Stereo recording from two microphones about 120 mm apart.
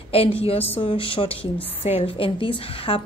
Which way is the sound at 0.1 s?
55° left (ahead or behind).